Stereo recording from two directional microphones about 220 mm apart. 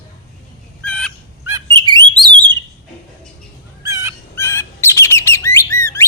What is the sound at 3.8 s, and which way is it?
Fowl, 15° right (ahead or behind).